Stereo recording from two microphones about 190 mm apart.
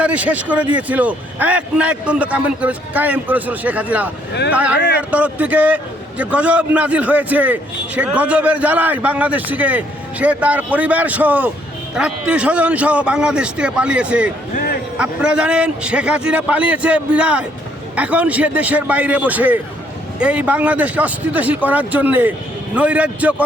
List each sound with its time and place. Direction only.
0.0 s a man's voice: 5° right (ahead or behind)
14.5 s a sound: 50° left (ahead or behind)
14.9 s a man's voice: 5° right (ahead or behind)